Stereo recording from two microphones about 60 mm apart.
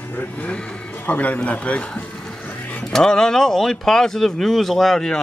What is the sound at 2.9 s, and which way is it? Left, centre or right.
Speech, centre.